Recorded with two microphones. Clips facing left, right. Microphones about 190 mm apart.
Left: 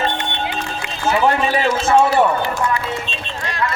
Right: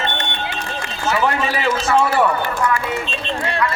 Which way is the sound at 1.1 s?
30° left (ahead or behind).